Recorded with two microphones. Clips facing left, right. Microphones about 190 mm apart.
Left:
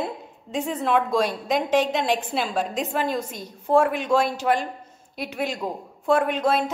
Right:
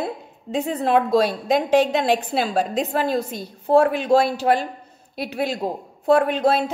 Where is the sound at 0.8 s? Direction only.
35° right (ahead or behind).